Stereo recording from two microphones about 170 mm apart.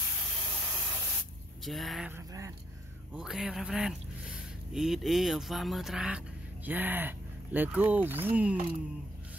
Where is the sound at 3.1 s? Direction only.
5° right (ahead or behind).